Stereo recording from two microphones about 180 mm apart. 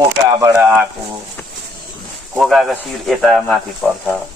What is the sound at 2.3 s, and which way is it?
Speech, centre (ahead or behind).